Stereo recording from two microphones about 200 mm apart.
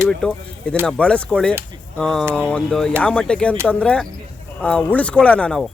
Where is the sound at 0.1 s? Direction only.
5° left (ahead or behind).